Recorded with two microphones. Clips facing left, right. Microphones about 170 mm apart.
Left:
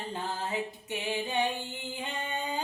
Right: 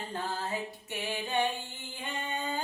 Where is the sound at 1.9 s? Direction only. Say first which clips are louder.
Even; 20° left (ahead or behind).